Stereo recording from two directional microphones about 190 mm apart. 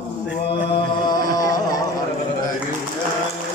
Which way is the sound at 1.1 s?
20° left (ahead or behind).